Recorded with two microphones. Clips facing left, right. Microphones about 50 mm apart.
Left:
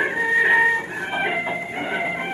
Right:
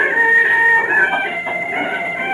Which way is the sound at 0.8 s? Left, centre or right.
Right.